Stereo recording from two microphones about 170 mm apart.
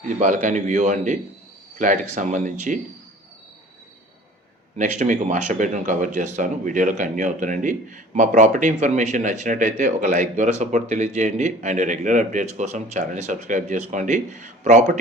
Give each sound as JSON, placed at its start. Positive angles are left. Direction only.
{"t": 0.2, "sound": "speech", "side_deg": -50}
{"t": 4.8, "sound": "speech", "side_deg": -45}